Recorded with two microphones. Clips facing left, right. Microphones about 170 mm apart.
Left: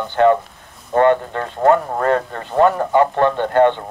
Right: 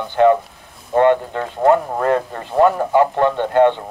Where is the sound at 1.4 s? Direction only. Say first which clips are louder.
Even; 15° right (ahead or behind).